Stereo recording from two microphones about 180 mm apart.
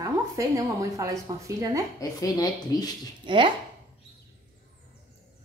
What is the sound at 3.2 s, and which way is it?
Speech, 25° right (ahead or behind).